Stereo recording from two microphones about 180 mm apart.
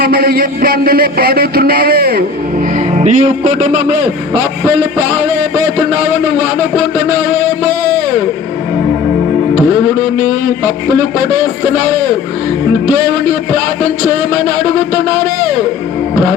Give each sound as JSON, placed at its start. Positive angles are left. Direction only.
{"t": 0.0, "sound": "a man's voice", "side_deg": -55}
{"t": 2.7, "sound": "a man's voice", "side_deg": -40}